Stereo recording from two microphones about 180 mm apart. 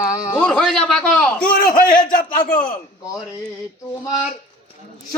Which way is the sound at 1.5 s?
50° left (ahead or behind).